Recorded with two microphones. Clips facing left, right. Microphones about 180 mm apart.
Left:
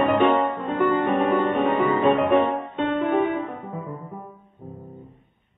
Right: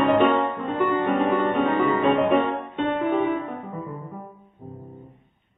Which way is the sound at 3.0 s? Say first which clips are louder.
Left 1 dB; 60° left (ahead or behind).